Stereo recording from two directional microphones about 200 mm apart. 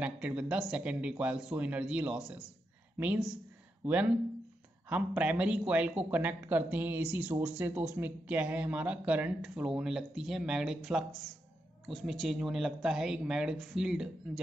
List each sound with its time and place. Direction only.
0.0 s speech: 5° right (ahead or behind)